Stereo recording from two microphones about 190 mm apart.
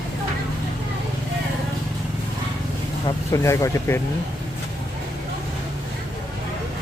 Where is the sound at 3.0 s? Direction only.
15° left (ahead or behind).